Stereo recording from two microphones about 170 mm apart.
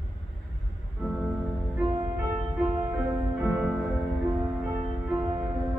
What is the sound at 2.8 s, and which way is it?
Music, 15° right (ahead or behind).